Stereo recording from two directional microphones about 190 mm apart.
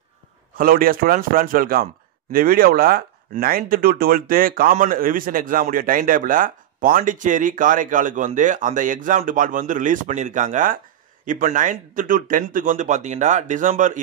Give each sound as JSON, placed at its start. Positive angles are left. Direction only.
{"t": 0.6, "sound": "speech", "side_deg": -50}